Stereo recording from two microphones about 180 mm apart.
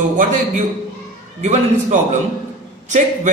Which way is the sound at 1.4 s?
40° right (ahead or behind).